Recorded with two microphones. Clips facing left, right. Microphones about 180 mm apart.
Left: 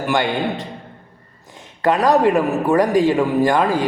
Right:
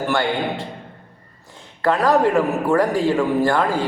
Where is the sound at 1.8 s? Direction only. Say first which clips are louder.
Left 2 dB; 20° left (ahead or behind).